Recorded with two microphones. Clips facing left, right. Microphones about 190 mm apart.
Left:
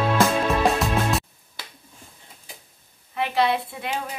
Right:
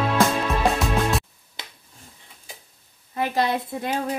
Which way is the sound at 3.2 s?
40° right (ahead or behind).